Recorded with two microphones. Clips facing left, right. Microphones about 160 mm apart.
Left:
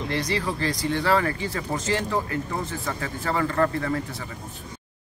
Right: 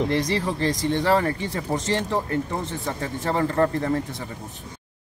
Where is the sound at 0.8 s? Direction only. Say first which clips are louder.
Right 1 dB; 30° right (ahead or behind).